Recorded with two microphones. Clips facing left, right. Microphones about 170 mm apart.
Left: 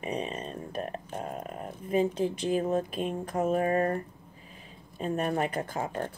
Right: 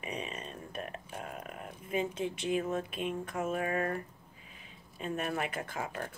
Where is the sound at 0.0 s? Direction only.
35° left (ahead or behind).